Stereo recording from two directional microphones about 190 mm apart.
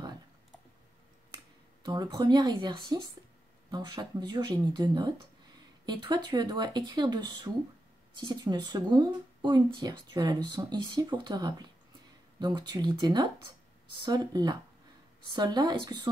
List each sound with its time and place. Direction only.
1.9 s speech: 20° right (ahead or behind)